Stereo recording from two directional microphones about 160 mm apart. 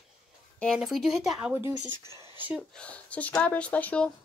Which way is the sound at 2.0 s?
15° right (ahead or behind).